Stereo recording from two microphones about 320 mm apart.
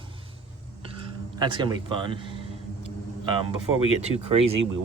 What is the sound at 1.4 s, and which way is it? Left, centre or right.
Speech, centre.